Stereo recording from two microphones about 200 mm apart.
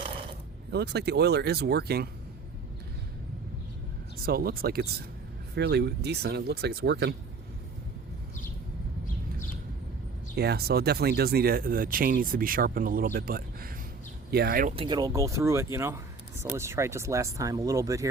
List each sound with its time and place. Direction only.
0.7 s speech: 55° right (ahead or behind)
4.3 s speech: 50° right (ahead or behind)
10.3 s speech: 55° right (ahead or behind)
14.8 s speech: 20° right (ahead or behind)